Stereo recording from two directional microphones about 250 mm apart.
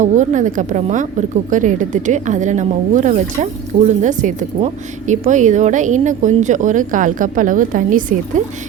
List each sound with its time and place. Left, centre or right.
0.0 s speech: right